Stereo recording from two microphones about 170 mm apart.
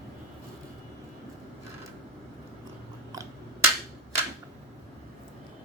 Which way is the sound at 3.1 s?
20° right (ahead or behind).